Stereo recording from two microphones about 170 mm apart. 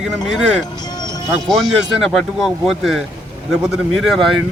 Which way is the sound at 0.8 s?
25° left (ahead or behind).